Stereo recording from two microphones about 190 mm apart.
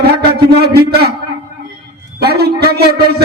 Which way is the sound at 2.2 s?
55° right (ahead or behind).